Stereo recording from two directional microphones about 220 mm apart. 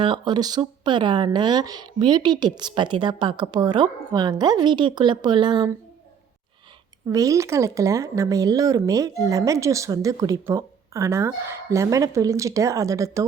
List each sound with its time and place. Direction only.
0.0 s speech: 20° right (ahead or behind)
7.1 s speech: 15° right (ahead or behind)